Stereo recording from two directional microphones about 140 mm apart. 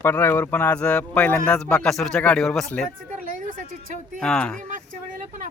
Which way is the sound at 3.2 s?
70° right (ahead or behind).